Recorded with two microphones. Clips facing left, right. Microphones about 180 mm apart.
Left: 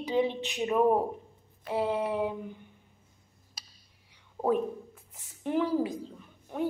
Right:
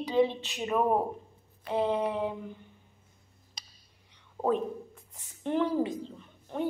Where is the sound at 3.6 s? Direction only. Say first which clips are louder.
Right 1 dB; 5° left (ahead or behind).